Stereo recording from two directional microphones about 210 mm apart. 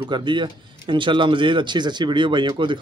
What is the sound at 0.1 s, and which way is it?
Speech, 20° right (ahead or behind).